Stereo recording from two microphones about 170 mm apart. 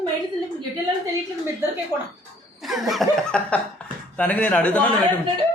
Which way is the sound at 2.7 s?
Centre (ahead or behind).